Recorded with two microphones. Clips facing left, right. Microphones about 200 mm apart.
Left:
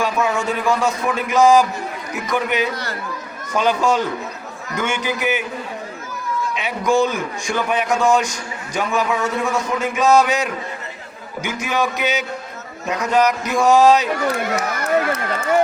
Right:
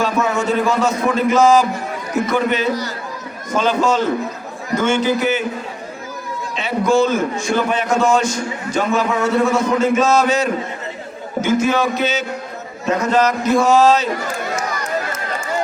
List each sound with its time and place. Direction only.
0.0 s a man's voice: 15° left (ahead or behind)
6.6 s a man's voice: 15° left (ahead or behind)
14.3 s run: 65° left (ahead or behind)